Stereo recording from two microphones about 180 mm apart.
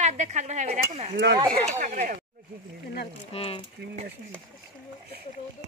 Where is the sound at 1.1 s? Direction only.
80° right.